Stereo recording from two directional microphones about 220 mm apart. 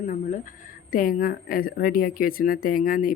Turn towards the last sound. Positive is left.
turn(degrees=40)  # may be behind; listen again after turning